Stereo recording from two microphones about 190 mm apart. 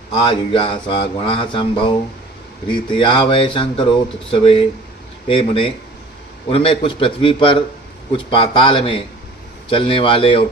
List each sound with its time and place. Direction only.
0.1 s speech: 25° left (ahead or behind)